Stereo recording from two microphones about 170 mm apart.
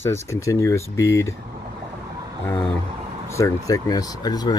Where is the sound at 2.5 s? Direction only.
10° left (ahead or behind).